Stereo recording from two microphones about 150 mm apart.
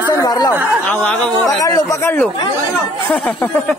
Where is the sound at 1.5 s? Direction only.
25° left (ahead or behind).